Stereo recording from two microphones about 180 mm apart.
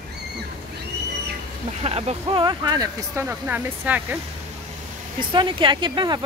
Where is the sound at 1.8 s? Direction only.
35° right (ahead or behind); by 4.0 s 10° right (ahead or behind).